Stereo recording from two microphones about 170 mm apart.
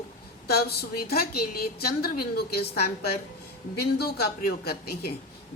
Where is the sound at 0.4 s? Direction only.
65° left (ahead or behind).